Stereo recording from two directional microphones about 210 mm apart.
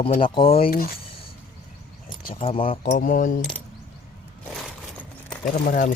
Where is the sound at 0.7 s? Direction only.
45° left (ahead or behind).